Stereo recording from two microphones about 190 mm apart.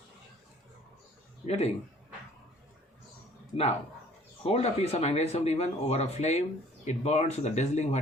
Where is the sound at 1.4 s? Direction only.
35° left (ahead or behind).